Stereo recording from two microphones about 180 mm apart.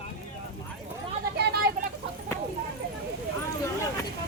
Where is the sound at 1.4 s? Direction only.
65° right (ahead or behind).